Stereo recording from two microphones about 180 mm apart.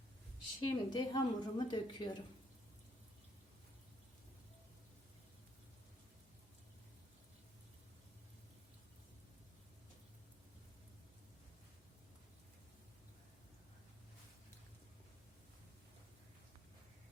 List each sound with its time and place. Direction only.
0.6 s a woman's voice: 25° left (ahead or behind)